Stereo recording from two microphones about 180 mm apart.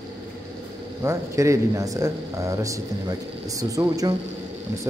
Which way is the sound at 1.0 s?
15° right (ahead or behind).